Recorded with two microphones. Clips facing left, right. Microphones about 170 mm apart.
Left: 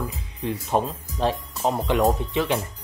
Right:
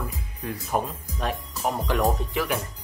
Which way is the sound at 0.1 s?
25° left (ahead or behind).